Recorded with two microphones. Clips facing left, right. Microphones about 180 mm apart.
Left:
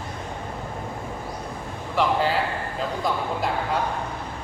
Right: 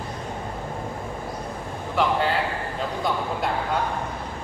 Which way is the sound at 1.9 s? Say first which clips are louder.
Even; centre (ahead or behind).